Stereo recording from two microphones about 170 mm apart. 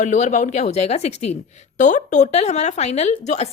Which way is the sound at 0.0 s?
45° left (ahead or behind).